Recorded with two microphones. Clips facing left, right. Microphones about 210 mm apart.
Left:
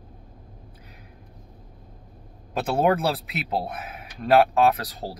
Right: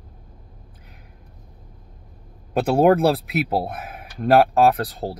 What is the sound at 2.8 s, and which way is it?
Speech, 55° right (ahead or behind).